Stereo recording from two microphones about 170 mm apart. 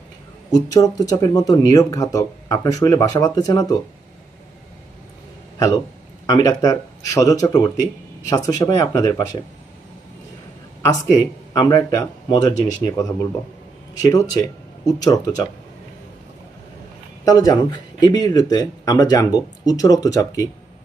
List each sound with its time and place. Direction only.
0.5 s speech: 20° left (ahead or behind)
6.2 s speech: 20° left (ahead or behind)
10.8 s speech: 15° left (ahead or behind)
17.2 s speech: 20° left (ahead or behind)